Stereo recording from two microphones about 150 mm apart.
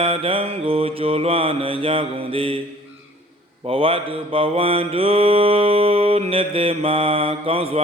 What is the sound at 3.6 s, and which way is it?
Mantra, 40° right (ahead or behind).